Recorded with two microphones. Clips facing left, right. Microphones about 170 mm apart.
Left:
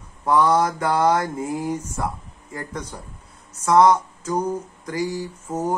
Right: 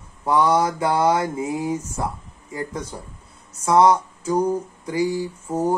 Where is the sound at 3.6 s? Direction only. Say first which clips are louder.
Even; 10° right (ahead or behind).